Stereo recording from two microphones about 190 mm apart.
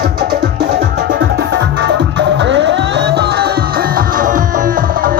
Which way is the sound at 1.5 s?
65° right (ahead or behind).